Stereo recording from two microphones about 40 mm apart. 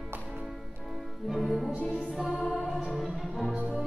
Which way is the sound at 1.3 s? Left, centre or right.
Centre.